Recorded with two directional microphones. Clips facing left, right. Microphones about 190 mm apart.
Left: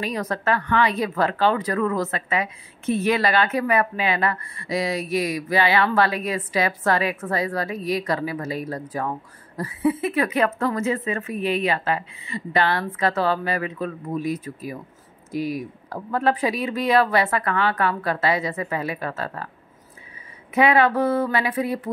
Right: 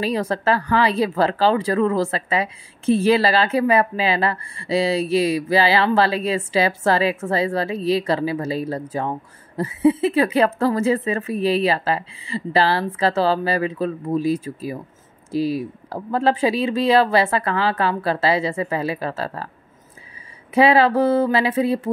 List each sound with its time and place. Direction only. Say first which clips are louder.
0.0 s a woman's voice: right 4 dB; 30° right (ahead or behind)
20.5 s a woman's voice: right 3 dB; 30° right (ahead or behind)